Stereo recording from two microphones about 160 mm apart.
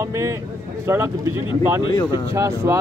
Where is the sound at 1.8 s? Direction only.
25° left (ahead or behind).